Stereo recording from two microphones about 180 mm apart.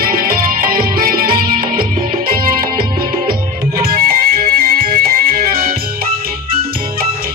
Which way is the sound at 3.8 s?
55° right (ahead or behind).